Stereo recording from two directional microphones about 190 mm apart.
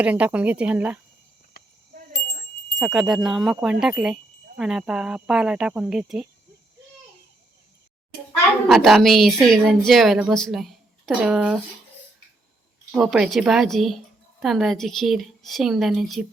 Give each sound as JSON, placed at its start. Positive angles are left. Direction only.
{"t": 0.0, "sound": "speech", "side_deg": -10}
{"t": 1.9, "sound": "a sound", "side_deg": -45}
{"t": 2.7, "sound": "speech", "side_deg": -5}
{"t": 8.6, "sound": "speech", "side_deg": 0}
{"t": 13.0, "sound": "speech", "side_deg": 0}